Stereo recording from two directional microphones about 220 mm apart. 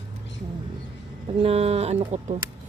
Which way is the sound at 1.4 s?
25° right (ahead or behind).